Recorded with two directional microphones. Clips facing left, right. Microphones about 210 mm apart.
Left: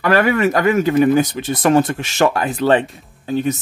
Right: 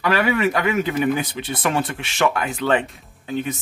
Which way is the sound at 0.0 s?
50° left (ahead or behind).